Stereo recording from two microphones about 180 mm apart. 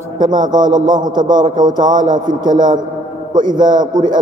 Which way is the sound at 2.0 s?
45° right (ahead or behind).